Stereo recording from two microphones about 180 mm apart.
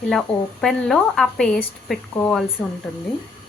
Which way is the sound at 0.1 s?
5° left (ahead or behind).